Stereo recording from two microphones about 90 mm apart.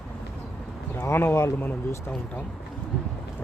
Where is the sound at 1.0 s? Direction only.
25° left (ahead or behind).